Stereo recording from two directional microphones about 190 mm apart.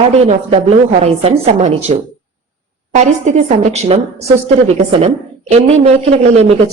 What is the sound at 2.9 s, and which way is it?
A woman's voice, 35° right (ahead or behind).